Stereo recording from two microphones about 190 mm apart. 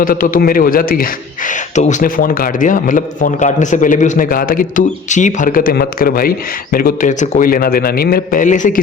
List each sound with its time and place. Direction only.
0.0 s a man's voice: 45° left (ahead or behind)